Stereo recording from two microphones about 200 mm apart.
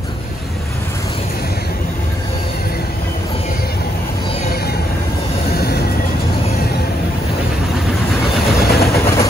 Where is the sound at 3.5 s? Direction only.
50° left (ahead or behind).